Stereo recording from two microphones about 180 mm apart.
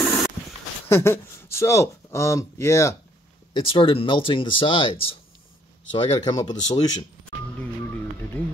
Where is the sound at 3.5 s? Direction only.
30° left (ahead or behind).